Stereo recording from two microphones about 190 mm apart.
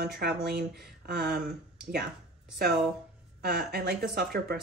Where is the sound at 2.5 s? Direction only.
60° right (ahead or behind).